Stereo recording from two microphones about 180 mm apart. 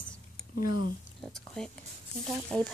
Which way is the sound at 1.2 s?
5° left (ahead or behind).